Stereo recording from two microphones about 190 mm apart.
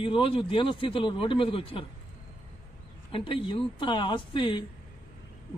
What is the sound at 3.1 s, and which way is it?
Speech, 25° left (ahead or behind).